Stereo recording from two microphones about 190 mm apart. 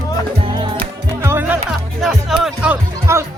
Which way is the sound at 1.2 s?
10° right (ahead or behind).